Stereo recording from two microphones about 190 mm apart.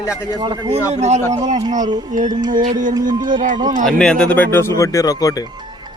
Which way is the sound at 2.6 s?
45° right (ahead or behind).